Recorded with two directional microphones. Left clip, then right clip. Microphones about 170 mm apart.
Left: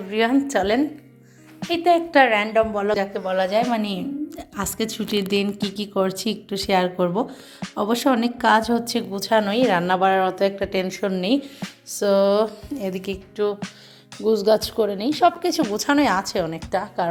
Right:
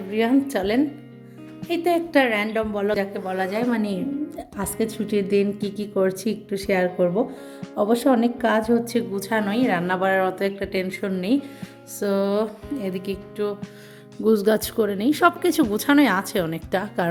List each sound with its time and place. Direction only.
0.1 s a woman's voice: 20° right (ahead or behind)
14.3 s a woman's voice: 45° right (ahead or behind)